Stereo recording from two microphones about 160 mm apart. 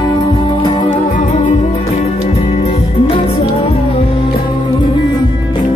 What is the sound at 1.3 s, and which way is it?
Music, 45° left (ahead or behind).